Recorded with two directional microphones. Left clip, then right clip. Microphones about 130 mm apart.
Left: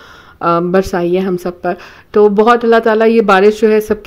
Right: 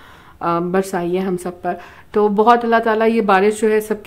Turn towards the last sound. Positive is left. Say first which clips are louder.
# left 6 dB
turn(degrees=30)  # may be behind; listen again after turning